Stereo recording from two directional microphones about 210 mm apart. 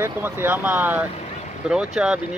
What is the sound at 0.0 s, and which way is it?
Speech, 10° right (ahead or behind).